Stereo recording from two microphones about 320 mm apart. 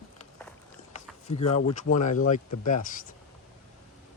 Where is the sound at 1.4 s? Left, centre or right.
Centre.